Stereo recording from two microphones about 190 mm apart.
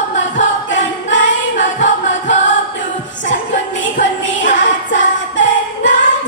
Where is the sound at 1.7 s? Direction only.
40° left (ahead or behind).